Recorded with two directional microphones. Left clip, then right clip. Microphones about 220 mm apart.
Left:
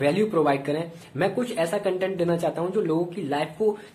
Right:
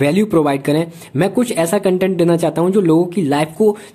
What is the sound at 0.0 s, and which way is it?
Speech, 40° right (ahead or behind).